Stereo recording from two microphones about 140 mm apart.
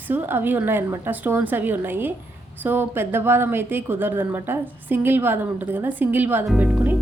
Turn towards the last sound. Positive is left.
turn(degrees=-5)  # may be behind; listen again after turning